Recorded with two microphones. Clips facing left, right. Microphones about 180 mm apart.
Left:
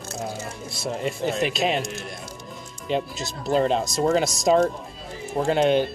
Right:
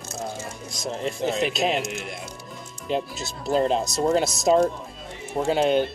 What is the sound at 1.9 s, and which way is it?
Speech, 15° right (ahead or behind).